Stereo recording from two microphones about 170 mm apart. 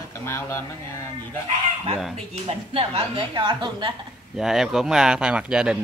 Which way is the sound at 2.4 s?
35° right (ahead or behind).